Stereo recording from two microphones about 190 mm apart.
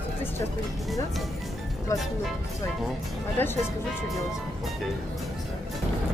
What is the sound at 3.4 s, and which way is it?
Speech, 10° left (ahead or behind).